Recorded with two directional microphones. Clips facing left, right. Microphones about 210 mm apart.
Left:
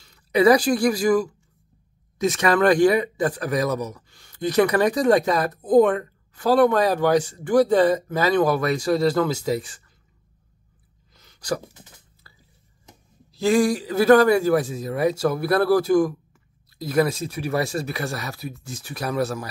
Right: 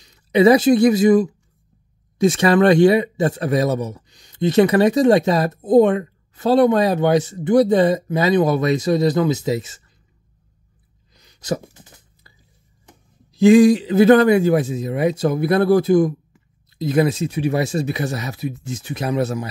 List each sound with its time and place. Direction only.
0.0 s speech: 20° right (ahead or behind)
11.1 s a sound: 15° right (ahead or behind)
13.3 s speech: 20° right (ahead or behind)